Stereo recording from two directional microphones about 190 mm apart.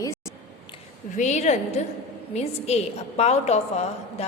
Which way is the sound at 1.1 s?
40° left (ahead or behind).